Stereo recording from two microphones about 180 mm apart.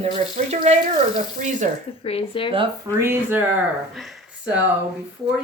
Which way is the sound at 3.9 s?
Centre (ahead or behind).